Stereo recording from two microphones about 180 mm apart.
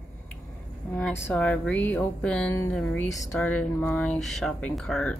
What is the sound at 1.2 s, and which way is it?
Speech, 10° left (ahead or behind).